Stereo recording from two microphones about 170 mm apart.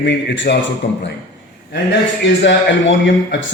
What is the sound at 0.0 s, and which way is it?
Speech, 90° left.